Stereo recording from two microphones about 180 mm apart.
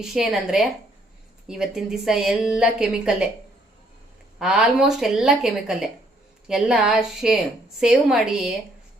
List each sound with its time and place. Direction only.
0.0 s speech: 5° right (ahead or behind)
4.4 s speech: 5° right (ahead or behind)